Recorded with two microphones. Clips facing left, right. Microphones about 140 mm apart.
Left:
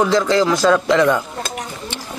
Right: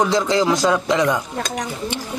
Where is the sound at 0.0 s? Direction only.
20° right (ahead or behind).